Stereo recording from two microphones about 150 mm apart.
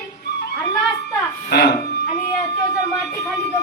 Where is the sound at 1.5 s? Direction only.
90° left.